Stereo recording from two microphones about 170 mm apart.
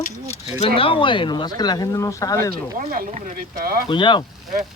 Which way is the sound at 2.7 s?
50° right (ahead or behind).